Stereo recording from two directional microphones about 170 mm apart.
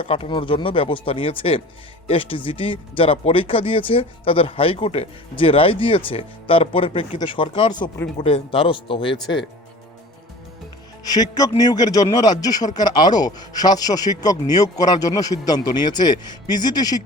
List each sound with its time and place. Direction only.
0.0 s speech: 30° left (ahead or behind)
11.0 s a man's voice: 20° left (ahead or behind)